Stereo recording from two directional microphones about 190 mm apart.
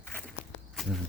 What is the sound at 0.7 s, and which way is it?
Walk, centre (ahead or behind).